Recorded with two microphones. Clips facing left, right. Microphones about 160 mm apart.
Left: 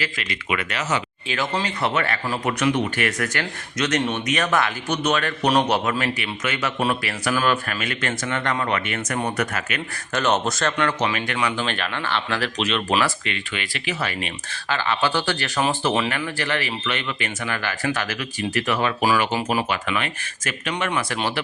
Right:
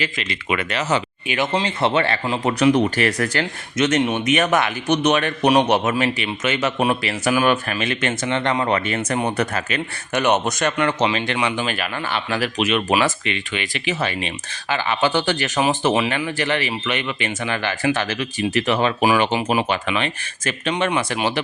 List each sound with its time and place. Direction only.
0.0 s speech: 25° right (ahead or behind)
10.1 s speech: 15° right (ahead or behind)